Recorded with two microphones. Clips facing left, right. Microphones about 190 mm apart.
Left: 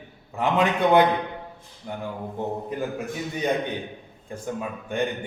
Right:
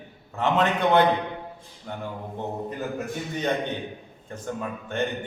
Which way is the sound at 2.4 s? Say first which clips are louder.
Left 4 dB; 10° left (ahead or behind).